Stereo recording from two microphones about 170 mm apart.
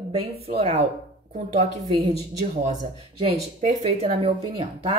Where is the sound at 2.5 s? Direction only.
45° right (ahead or behind).